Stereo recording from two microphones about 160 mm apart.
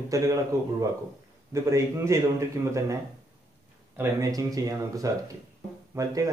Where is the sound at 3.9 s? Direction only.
20° right (ahead or behind).